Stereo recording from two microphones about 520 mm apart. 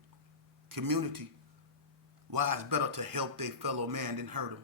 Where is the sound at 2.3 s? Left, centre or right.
Right.